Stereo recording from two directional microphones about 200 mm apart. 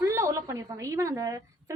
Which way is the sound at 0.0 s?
15° right (ahead or behind).